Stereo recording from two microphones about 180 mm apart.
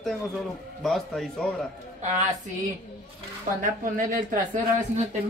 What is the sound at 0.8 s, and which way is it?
Speech, centre (ahead or behind).